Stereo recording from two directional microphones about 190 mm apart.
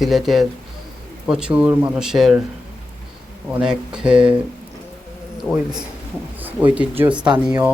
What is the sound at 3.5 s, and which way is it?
Speech, 5° right (ahead or behind).